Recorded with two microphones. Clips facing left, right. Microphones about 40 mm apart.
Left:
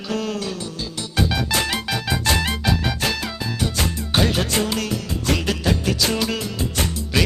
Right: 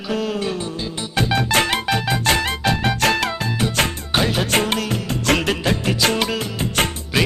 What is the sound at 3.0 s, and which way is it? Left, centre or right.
Music, right.